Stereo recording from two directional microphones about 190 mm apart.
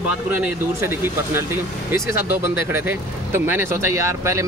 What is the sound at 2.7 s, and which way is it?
Speech, 10° right (ahead or behind).